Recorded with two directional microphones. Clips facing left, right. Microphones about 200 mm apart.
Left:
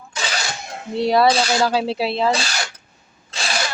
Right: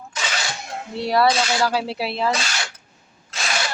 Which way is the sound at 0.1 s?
30° left (ahead or behind).